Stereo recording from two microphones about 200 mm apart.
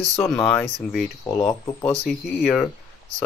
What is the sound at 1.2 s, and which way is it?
Speech, 15° left (ahead or behind).